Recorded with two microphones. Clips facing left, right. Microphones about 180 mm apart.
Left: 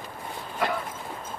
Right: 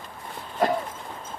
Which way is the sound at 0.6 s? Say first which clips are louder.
Right 5 dB; 45° right (ahead or behind).